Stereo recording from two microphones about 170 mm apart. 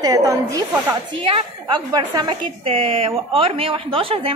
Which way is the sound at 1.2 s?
35° right (ahead or behind).